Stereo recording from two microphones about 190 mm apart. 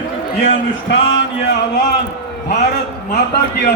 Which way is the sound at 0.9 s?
80° left.